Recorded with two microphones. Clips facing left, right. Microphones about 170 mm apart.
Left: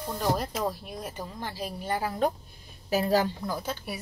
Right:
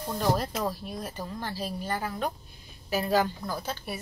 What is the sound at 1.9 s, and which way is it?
Speech, 35° left (ahead or behind).